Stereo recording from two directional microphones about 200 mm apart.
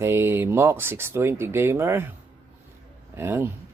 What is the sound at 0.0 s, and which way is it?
Speech, 10° right (ahead or behind).